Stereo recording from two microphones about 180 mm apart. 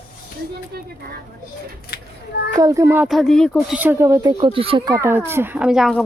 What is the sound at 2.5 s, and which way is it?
Speech, 20° right (ahead or behind).